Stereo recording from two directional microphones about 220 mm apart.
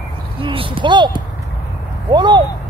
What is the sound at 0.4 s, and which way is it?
Speech, 25° right (ahead or behind).